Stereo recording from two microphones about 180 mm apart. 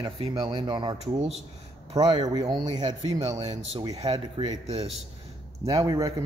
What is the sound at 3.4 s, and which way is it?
Speech, 35° right (ahead or behind).